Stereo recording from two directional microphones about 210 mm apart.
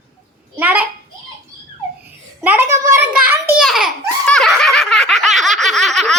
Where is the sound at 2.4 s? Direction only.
10° right (ahead or behind).